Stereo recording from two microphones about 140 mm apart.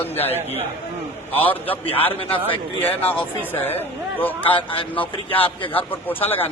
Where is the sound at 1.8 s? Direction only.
45° left (ahead or behind).